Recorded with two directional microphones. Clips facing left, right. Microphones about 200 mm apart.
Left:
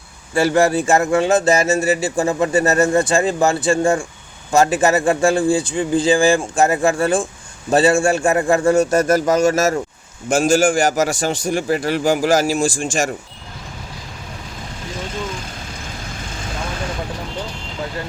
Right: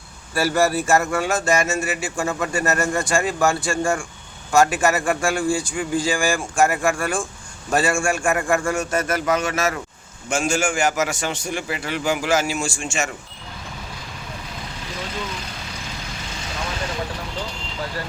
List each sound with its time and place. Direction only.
0.3 s speech: 20° left (ahead or behind)
4.5 s a man's voice: 35° left (ahead or behind)
8.8 s a man's voice: 40° left (ahead or behind)